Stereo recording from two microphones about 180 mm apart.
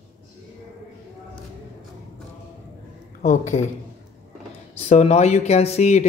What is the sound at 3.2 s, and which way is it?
Speech, 40° left (ahead or behind).